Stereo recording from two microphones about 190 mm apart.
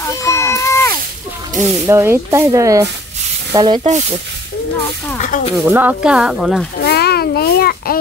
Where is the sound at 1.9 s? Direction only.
15° right (ahead or behind).